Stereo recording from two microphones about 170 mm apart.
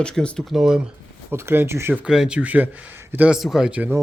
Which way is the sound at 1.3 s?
15° right (ahead or behind).